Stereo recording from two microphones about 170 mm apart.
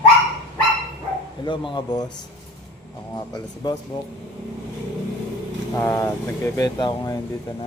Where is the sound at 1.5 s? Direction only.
25° left (ahead or behind).